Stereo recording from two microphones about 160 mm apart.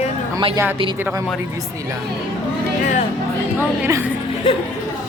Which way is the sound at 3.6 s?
15° right (ahead or behind).